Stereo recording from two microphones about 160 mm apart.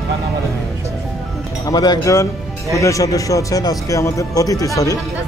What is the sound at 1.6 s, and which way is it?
Speech, 25° left (ahead or behind).